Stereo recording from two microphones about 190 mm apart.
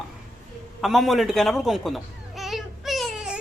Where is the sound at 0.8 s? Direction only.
Centre (ahead or behind).